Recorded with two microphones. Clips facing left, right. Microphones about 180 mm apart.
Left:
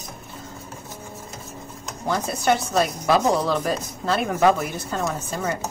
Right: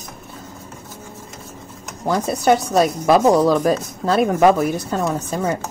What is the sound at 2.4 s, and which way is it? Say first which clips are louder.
A woman's voice: right 5 dB; 40° right (ahead or behind).